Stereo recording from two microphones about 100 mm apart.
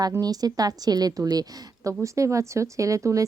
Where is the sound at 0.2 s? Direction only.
40° right (ahead or behind).